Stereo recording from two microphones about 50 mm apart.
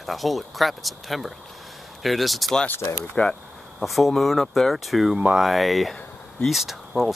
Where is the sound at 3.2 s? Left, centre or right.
Left.